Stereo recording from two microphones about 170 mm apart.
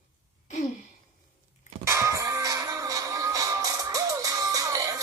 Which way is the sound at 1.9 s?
15° right (ahead or behind).